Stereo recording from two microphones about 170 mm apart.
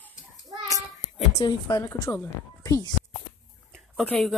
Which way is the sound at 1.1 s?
25° left (ahead or behind).